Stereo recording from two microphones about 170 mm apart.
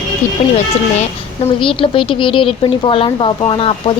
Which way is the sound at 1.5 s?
30° left (ahead or behind).